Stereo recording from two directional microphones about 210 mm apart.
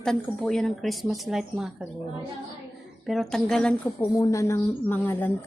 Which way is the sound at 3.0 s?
Centre (ahead or behind).